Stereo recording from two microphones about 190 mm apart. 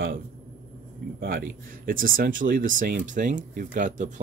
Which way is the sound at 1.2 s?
50° right (ahead or behind).